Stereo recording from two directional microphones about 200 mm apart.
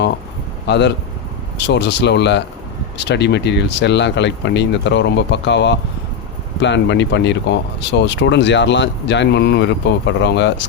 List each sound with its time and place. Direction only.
0.7 s speech: 60° left (ahead or behind)